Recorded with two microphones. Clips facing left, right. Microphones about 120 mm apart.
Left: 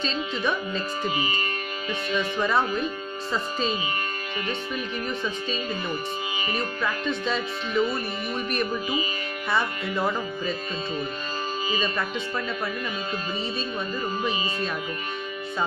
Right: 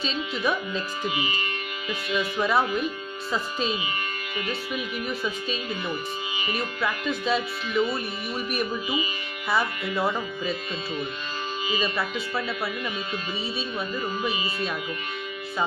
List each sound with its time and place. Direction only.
0.0 s music: 5° right (ahead or behind)
1.0 s speech: 40° left (ahead or behind)
2.3 s music: 5° right (ahead or behind)
4.5 s music: 5° right (ahead or behind)
9.5 s music: 5° right (ahead or behind)
11.8 s music: 5° right (ahead or behind)